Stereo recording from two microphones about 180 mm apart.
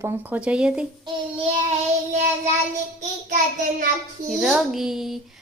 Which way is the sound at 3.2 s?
45° right (ahead or behind).